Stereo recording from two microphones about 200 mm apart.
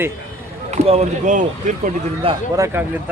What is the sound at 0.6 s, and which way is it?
Speech, 30° right (ahead or behind).